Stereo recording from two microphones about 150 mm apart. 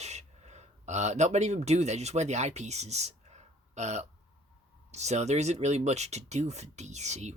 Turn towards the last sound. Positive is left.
turn(degrees=-50)  # may be behind; listen again after turning